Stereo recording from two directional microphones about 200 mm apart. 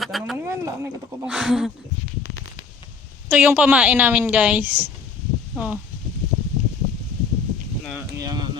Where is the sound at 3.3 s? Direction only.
5° right (ahead or behind).